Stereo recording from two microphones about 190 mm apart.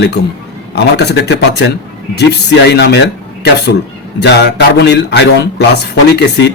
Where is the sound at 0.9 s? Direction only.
60° left (ahead or behind).